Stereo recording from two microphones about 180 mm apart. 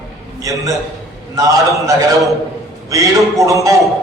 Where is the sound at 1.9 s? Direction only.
20° right (ahead or behind).